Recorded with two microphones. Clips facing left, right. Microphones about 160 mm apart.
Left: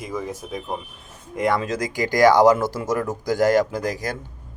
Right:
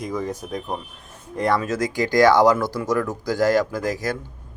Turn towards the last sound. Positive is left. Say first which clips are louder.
# left 1 dB
turn(degrees=20)  # may be behind; listen again after turning